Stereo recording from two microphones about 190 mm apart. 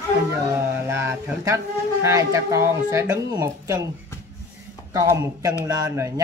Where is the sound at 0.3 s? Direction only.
15° right (ahead or behind).